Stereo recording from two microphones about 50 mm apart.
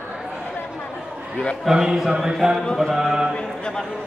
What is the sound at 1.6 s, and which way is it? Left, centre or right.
A man's voice, centre.